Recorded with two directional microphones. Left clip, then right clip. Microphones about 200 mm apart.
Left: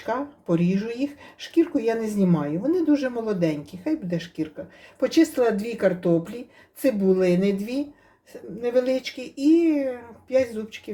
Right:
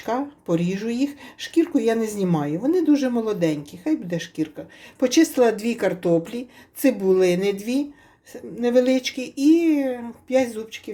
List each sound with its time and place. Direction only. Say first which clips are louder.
0.0 s speech: right 2 dB; 30° right (ahead or behind)